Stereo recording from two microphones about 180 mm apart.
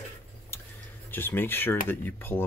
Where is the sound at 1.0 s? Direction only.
10° left (ahead or behind).